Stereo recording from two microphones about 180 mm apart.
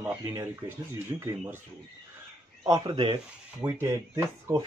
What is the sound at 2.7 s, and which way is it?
Speech, 25° right (ahead or behind).